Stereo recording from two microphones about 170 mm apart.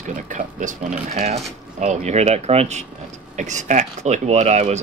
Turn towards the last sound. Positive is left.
turn(degrees=-40)  # may be behind; listen again after turning